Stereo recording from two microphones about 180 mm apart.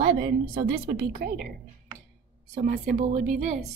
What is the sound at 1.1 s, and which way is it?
Speech, 50° right (ahead or behind).